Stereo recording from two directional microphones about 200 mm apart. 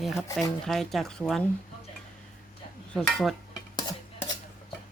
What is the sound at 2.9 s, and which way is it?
Speech, centre (ahead or behind).